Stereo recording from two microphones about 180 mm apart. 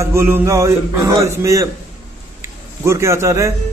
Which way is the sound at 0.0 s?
15° right (ahead or behind).